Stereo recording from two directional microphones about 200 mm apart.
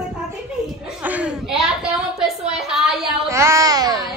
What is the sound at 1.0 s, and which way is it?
A woman's voice, 5° right (ahead or behind).